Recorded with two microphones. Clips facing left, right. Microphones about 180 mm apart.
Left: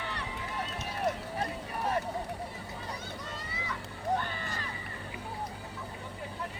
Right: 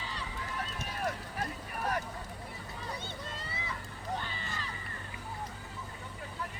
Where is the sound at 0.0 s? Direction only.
65° left (ahead or behind).